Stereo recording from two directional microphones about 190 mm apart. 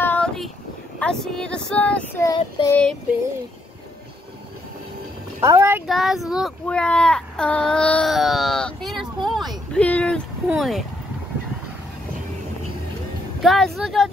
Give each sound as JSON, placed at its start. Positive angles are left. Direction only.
{"t": 0.0, "sound": "a sound", "side_deg": 10}
{"t": 0.9, "sound": "speech", "side_deg": 5}
{"t": 2.2, "sound": "child singing", "side_deg": 20}
{"t": 5.4, "sound": "speech", "side_deg": -15}
{"t": 5.9, "sound": "speech", "side_deg": 0}
{"t": 13.4, "sound": "speech", "side_deg": 0}